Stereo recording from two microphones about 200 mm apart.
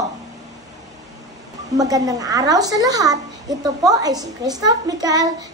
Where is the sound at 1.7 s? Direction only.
20° right (ahead or behind).